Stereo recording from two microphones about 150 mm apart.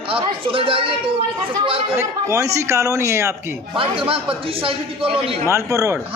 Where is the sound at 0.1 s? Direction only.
35° right (ahead or behind).